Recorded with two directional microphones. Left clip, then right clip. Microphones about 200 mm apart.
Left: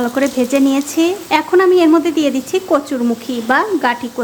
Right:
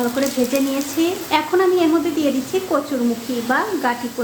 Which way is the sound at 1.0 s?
30° left (ahead or behind).